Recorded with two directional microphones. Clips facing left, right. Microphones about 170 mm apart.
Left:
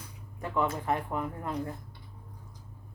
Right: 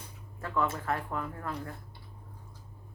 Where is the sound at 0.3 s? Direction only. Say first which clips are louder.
Left 1 dB; 15° left (ahead or behind).